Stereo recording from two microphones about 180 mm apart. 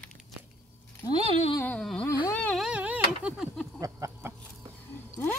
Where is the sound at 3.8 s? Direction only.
15° right (ahead or behind).